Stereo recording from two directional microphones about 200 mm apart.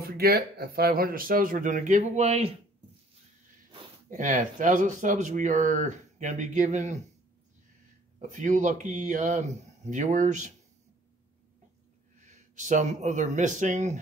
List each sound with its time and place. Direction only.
0.0 s speech: 50° right (ahead or behind); by 2.5 s 35° right (ahead or behind)
4.1 s speech: 40° right (ahead or behind)
8.2 s speech: 40° right (ahead or behind)
12.3 s speech: 35° right (ahead or behind)